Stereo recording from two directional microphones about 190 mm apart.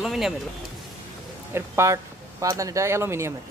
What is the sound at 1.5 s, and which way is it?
Speech, 15° right (ahead or behind).